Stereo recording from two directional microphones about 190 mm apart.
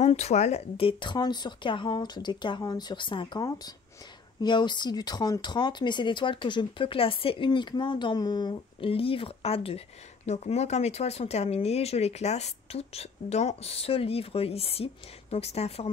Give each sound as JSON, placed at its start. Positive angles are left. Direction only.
{"t": 0.0, "sound": "speech", "side_deg": 35}